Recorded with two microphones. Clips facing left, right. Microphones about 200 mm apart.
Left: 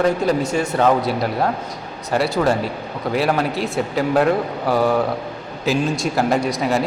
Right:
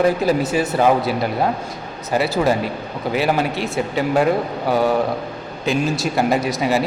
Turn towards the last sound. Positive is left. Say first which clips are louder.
# even
turn(degrees=0)  # may be behind; listen again after turning